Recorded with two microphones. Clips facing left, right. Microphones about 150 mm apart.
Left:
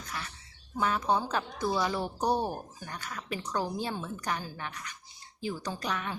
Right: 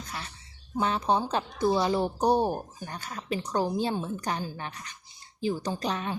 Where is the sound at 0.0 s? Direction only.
30° right (ahead or behind).